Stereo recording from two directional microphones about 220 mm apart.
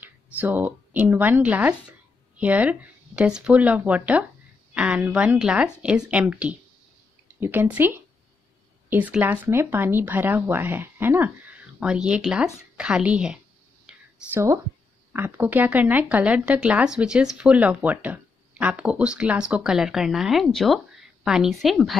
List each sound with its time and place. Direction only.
0.0 s speech: 10° right (ahead or behind)
13.8 s a sound: 10° right (ahead or behind)
15.1 s speech: 10° right (ahead or behind)